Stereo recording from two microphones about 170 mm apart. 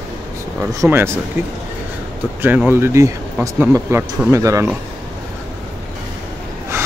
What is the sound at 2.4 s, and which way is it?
Speech, 10° right (ahead or behind).